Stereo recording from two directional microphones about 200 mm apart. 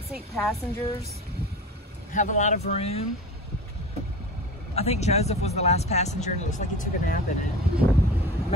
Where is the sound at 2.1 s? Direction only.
40° left (ahead or behind).